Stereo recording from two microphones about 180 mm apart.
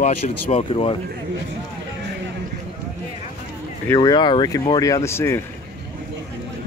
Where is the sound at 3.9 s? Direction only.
20° left (ahead or behind).